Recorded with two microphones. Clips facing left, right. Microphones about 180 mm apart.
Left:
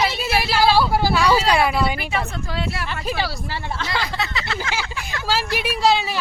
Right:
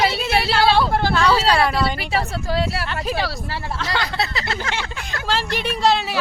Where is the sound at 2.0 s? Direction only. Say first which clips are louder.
Right 2 dB; 35° right (ahead or behind).